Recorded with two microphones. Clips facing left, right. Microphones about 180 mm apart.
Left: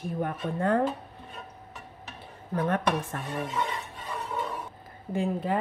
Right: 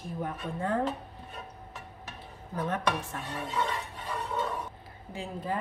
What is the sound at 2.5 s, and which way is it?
Speech, 60° left (ahead or behind).